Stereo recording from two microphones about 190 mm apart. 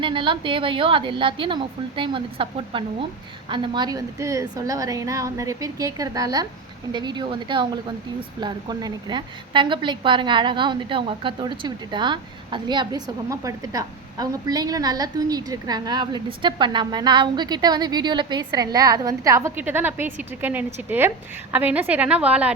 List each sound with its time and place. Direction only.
0.0 s a woman's voice: 25° right (ahead or behind); by 22.5 s 5° right (ahead or behind)